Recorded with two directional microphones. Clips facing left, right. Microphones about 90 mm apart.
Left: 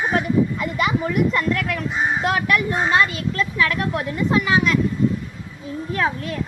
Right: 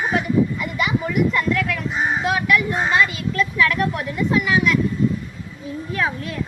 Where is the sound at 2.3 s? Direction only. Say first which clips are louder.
Right 1 dB; 45° left (ahead or behind).